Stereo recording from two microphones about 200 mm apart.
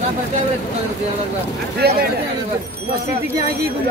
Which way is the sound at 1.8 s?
55° right (ahead or behind).